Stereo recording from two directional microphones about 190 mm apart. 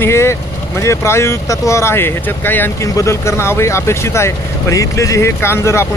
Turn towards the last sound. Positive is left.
turn(degrees=15)  # may be behind; listen again after turning